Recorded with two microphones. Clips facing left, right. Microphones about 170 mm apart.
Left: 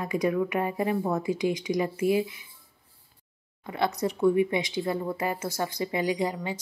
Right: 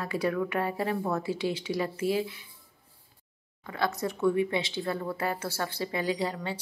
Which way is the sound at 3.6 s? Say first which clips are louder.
Left 3 dB; 20° left (ahead or behind).